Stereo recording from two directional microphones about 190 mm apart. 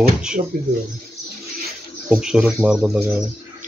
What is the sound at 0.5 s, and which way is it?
Speech, 50° right (ahead or behind).